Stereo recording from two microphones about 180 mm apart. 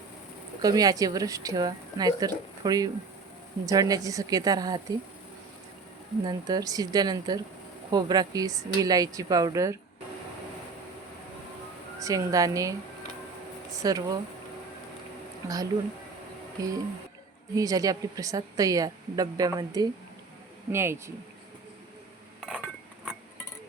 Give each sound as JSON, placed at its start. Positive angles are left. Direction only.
{"t": 0.6, "sound": "a woman's voice", "side_deg": -20}
{"t": 6.2, "sound": "a woman's voice", "side_deg": -20}
{"t": 11.9, "sound": "a woman's voice", "side_deg": -20}
{"t": 13.7, "sound": "a woman's voice", "side_deg": -20}
{"t": 16.6, "sound": "a woman's voice", "side_deg": -20}
{"t": 22.4, "sound": "dishes", "side_deg": 0}